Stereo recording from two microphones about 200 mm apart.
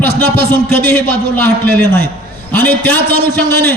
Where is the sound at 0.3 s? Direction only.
10° left (ahead or behind).